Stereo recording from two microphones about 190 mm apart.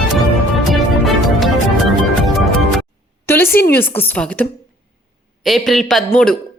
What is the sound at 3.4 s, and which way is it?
Speech, 55° left (ahead or behind).